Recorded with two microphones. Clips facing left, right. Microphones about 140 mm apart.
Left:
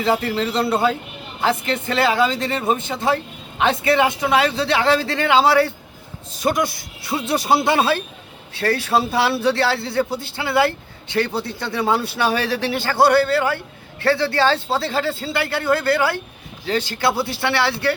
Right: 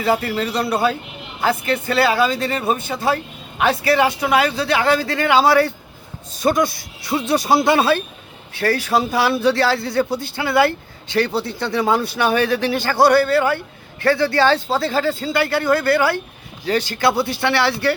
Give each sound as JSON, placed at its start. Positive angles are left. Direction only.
{"t": 0.0, "sound": "speech", "side_deg": 25}
{"t": 17.2, "sound": "speech", "side_deg": -20}
{"t": 17.5, "sound": "speech", "side_deg": 25}